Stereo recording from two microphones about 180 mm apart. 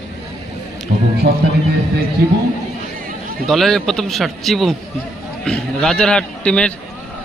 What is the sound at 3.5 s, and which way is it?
A man's voice, centre (ahead or behind).